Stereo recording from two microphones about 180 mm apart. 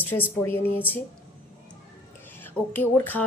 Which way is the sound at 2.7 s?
10° left (ahead or behind).